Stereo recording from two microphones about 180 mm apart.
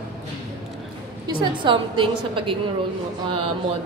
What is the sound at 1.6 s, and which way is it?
Speech, 30° right (ahead or behind).